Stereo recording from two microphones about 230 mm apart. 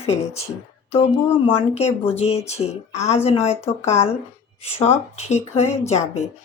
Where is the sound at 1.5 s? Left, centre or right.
Left.